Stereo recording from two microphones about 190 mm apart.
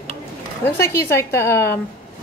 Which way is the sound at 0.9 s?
15° left (ahead or behind).